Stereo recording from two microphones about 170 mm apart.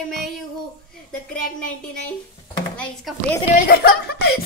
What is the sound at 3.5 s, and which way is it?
Speech, 65° left (ahead or behind).